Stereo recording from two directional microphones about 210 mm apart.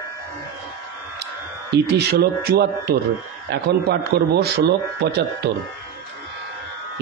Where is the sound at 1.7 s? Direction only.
50° right (ahead or behind).